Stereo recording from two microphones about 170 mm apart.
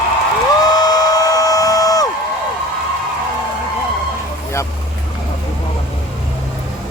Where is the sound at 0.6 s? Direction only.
25° left (ahead or behind).